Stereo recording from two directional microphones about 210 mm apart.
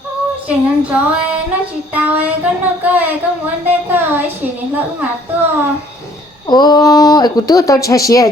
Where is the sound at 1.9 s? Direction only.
5° right (ahead or behind).